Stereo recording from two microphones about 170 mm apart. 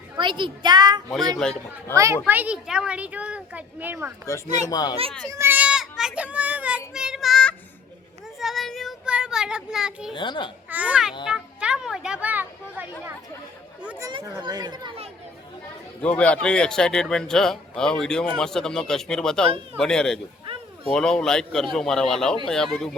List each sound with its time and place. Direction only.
0.2 s speech: 30° right (ahead or behind)
1.4 s speech: 5° left (ahead or behind)
2.2 s a child's voice: 10° right (ahead or behind)
4.4 s a child's voice: 45° right (ahead or behind)
4.7 s a child's voice: 25° left (ahead or behind)
5.3 s a child's voice: 15° right (ahead or behind)
8.4 s child singing: centre (ahead or behind)
10.2 s a child's voice: 30° left (ahead or behind)
10.7 s a child's voice: 10° right (ahead or behind)
14.0 s speech: 25° right (ahead or behind)
16.0 s speech: 5° left (ahead or behind)